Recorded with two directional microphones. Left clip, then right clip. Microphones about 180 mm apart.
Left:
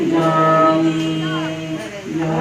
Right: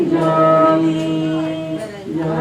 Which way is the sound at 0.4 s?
30° left (ahead or behind).